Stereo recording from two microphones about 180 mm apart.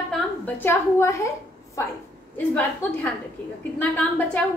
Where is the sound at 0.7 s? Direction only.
15° left (ahead or behind).